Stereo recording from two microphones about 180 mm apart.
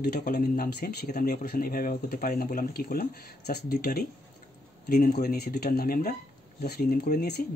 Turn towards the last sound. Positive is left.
turn(degrees=60)  # may be behind; listen again after turning